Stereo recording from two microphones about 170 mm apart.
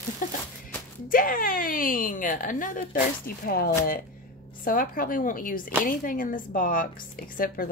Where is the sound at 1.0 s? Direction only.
55° left (ahead or behind).